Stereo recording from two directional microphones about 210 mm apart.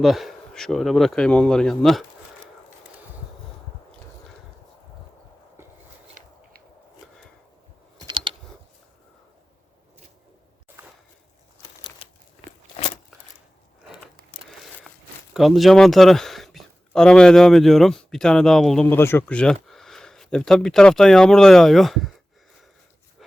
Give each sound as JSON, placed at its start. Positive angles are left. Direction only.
{"t": 0.0, "sound": "speech", "side_deg": 0}
{"t": 7.9, "sound": "typing", "side_deg": -20}
{"t": 10.8, "sound": "a sound", "side_deg": -10}
{"t": 15.3, "sound": "speech", "side_deg": 0}